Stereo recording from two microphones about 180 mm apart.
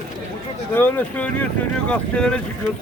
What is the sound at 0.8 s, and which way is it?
Speech, 10° left (ahead or behind).